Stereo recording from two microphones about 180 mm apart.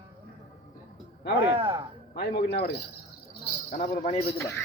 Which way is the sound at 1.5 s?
30° right (ahead or behind).